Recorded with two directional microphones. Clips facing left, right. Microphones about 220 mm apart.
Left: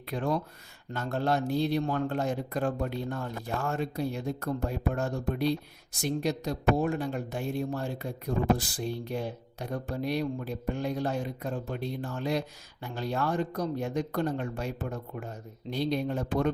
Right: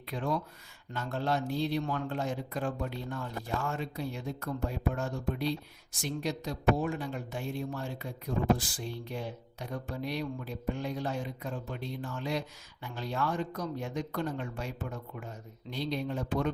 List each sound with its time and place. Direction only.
0.1 s a man's voice: 45° left (ahead or behind)